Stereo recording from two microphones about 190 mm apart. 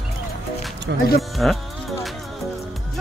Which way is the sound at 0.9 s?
70° right (ahead or behind).